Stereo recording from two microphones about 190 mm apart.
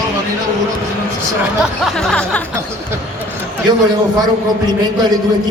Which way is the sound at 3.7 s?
20° right (ahead or behind).